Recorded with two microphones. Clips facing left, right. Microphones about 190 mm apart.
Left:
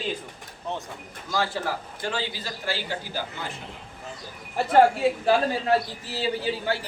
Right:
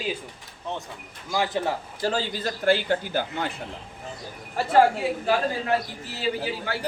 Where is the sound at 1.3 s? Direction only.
20° right (ahead or behind).